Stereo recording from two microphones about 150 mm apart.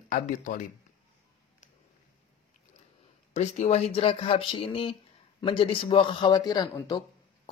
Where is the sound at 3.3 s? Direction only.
50° left (ahead or behind).